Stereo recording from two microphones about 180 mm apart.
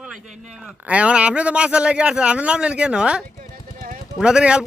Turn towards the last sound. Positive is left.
turn(degrees=-5)  # may be behind; listen again after turning